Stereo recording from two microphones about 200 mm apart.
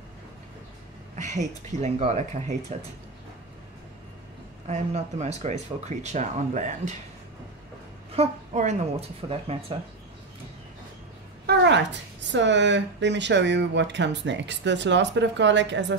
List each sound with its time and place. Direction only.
1.1 s speech: 35° right (ahead or behind)
4.6 s speech: 35° right (ahead or behind)
8.1 s a woman's voice: 35° right (ahead or behind)
11.4 s speech: 60° right (ahead or behind)